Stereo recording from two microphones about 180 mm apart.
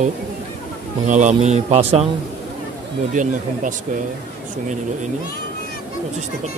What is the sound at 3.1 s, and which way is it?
Speech, 45° right (ahead or behind).